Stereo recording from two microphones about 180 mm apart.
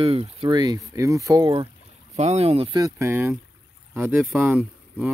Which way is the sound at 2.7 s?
15° right (ahead or behind).